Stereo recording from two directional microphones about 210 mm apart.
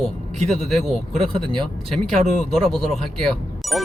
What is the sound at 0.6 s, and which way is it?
Speech, centre (ahead or behind).